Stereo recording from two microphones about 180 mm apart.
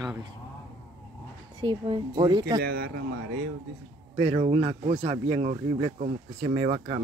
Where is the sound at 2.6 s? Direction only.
60° right (ahead or behind).